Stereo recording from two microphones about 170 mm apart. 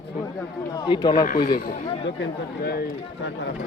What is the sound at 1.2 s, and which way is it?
Speech, 55° left (ahead or behind).